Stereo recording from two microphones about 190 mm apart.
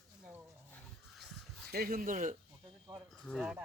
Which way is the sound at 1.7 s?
50° right (ahead or behind).